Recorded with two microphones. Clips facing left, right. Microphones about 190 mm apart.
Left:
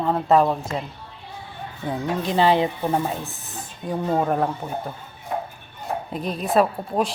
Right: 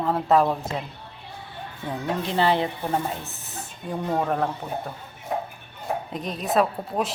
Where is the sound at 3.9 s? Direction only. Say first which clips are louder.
Left 3 dB; 10° left (ahead or behind).